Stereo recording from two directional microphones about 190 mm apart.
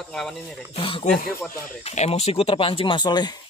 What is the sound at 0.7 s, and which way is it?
Speech, 30° left (ahead or behind).